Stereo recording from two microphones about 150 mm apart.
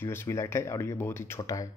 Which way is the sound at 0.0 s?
15° left (ahead or behind).